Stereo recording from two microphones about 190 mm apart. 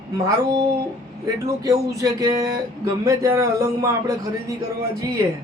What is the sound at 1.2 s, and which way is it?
Speech, 20° right (ahead or behind).